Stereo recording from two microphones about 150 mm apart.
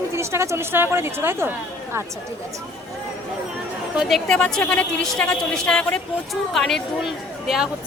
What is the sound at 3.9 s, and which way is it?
A woman's voice, centre (ahead or behind).